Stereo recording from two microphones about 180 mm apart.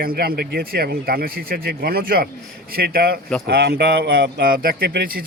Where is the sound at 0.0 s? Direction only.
55° right (ahead or behind).